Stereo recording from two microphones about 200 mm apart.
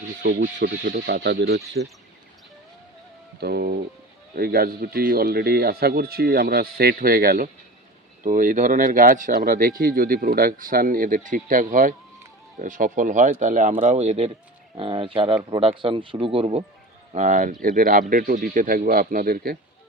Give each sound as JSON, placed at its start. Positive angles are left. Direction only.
{"t": 0.2, "sound": "speech", "side_deg": -65}
{"t": 0.4, "sound": "speech", "side_deg": -45}
{"t": 3.4, "sound": "speech", "side_deg": -50}